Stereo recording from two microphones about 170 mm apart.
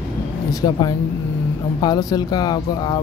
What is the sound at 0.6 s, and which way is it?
Speech, 30° left (ahead or behind).